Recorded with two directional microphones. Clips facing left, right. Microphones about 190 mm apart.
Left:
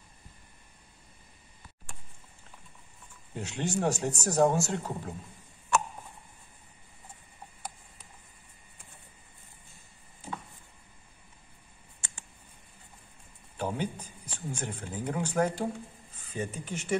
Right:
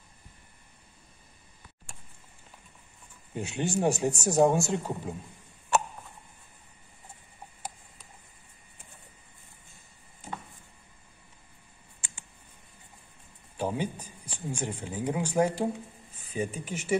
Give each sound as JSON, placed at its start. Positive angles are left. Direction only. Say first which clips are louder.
{"t": 3.3, "sound": "speech", "louder": "right 2 dB", "side_deg": -10}
{"t": 13.6, "sound": "speech", "louder": "right 2 dB", "side_deg": -10}